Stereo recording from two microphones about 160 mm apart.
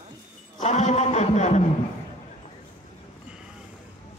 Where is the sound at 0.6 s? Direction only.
45° left (ahead or behind).